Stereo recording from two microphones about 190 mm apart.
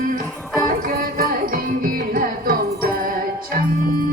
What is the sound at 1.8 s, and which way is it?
Music, 50° right (ahead or behind).